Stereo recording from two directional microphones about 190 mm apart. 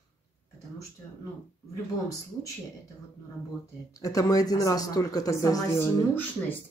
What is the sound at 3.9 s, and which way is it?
Speech, 15° left (ahead or behind).